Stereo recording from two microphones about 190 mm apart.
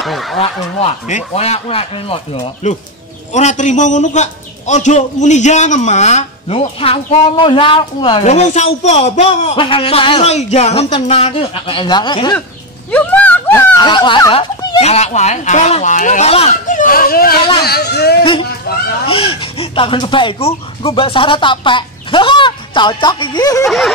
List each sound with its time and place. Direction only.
0.0 s speech: centre (ahead or behind)
0.4 s a man's voice: 30° left (ahead or behind)
12.9 s a sound: 10° left (ahead or behind)
14.8 s a man's voice: 35° left (ahead or behind); by 18.1 s 60° left (ahead or behind)
19.0 s speech: 25° left (ahead or behind)
23.6 s a sound: centre (ahead or behind)